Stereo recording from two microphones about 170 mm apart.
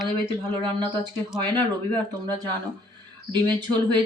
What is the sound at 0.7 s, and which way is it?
Speech, 25° right (ahead or behind).